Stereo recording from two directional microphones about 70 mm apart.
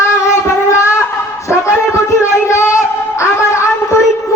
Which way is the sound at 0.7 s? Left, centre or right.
Left.